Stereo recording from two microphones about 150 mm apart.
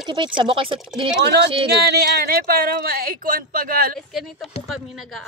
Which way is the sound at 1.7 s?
90° right.